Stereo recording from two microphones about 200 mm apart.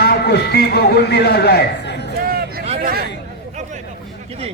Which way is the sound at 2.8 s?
45° right (ahead or behind).